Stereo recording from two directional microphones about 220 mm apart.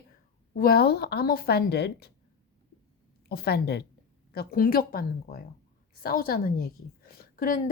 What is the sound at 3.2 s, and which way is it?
A woman's voice, 45° left (ahead or behind).